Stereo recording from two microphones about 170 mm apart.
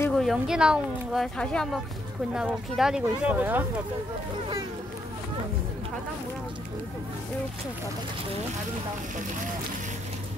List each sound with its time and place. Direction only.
0.1 s speech: centre (ahead or behind)